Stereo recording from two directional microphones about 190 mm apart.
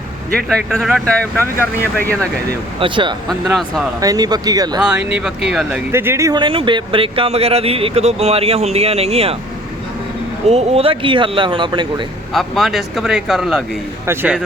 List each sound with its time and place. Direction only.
0.4 s speech: centre (ahead or behind)
2.8 s speech: 25° right (ahead or behind)
3.2 s speech: centre (ahead or behind)
4.0 s speech: 20° right (ahead or behind)
4.8 s speech: 10° right (ahead or behind); by 9.3 s 30° right (ahead or behind)
10.5 s speech: 30° right (ahead or behind)
12.3 s speech: centre (ahead or behind)